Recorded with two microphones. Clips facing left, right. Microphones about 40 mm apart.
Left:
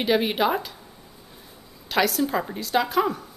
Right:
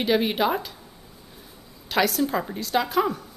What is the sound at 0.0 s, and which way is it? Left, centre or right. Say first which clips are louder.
Speech: even; centre.